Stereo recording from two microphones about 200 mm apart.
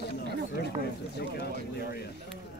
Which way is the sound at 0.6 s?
55° left (ahead or behind).